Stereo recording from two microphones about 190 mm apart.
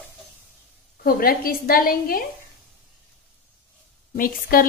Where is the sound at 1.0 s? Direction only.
50° left (ahead or behind).